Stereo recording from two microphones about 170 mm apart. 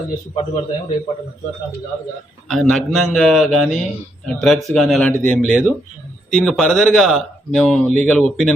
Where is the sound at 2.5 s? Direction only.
5° left (ahead or behind).